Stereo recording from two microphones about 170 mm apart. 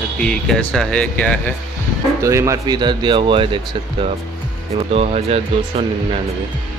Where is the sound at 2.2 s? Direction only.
15° right (ahead or behind).